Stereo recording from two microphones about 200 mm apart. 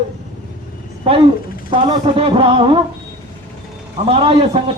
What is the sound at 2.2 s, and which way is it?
Speech, 25° right (ahead or behind).